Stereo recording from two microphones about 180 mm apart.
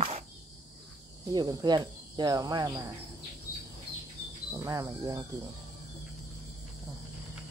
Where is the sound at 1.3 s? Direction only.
20° right (ahead or behind).